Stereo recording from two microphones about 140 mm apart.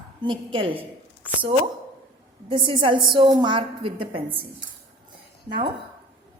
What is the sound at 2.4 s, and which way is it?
A woman's voice, 35° right (ahead or behind).